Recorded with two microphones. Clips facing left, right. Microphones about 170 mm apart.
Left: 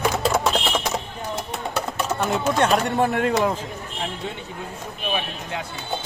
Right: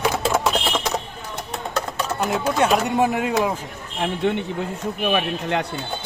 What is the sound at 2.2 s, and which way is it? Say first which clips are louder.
Speech: right 1 dB; centre (ahead or behind).